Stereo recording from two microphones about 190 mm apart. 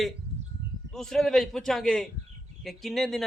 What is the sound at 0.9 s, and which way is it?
A man's voice, centre (ahead or behind).